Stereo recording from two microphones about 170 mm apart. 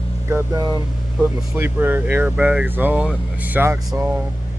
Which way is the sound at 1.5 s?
10° right (ahead or behind).